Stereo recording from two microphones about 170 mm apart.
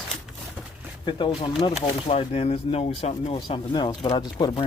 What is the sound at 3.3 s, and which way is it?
Speech, 25° left (ahead or behind).